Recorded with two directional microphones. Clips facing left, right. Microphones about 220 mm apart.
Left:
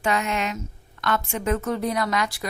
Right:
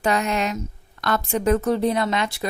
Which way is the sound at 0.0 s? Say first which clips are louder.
Right 3 dB; 35° right (ahead or behind).